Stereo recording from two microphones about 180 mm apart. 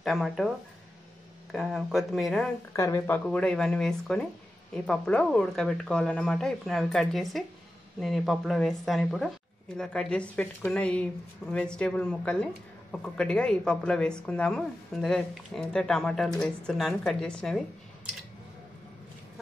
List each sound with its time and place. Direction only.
0.0 s speech: centre (ahead or behind)
1.5 s speech: centre (ahead or behind)
2.7 s speech: 15° left (ahead or behind)
3.3 s speech: 5° left (ahead or behind)